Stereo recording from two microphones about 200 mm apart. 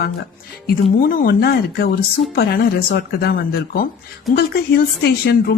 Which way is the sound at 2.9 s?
50° left (ahead or behind).